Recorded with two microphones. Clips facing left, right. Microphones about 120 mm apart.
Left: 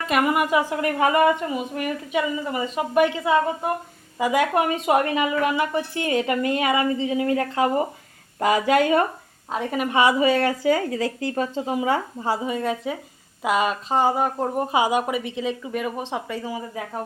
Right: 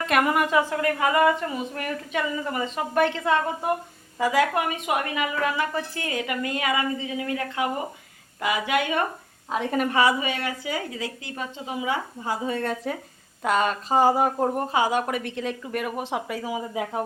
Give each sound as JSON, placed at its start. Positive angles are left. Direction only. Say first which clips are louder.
{"t": 0.1, "sound": "a woman's voice", "louder": "left 1 dB", "side_deg": 5}
{"t": 9.5, "sound": "a woman's voice", "louder": "even", "side_deg": 5}
{"t": 10.2, "sound": "speech", "louder": "left 9 dB", "side_deg": 35}
{"t": 12.3, "sound": "a woman's voice", "louder": "left 3 dB", "side_deg": 15}
{"t": 14.7, "sound": "a woman's voice", "louder": "left 2 dB", "side_deg": 15}